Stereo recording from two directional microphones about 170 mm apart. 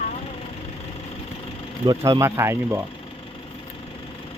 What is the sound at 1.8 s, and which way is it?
Speech, 20° right (ahead or behind).